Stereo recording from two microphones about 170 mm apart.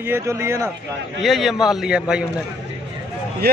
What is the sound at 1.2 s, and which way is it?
A man's voice, centre (ahead or behind).